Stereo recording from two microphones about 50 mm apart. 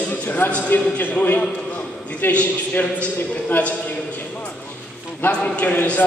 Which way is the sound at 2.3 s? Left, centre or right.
Left.